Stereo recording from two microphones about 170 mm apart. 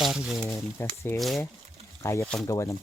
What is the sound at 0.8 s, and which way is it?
Speech, 15° left (ahead or behind).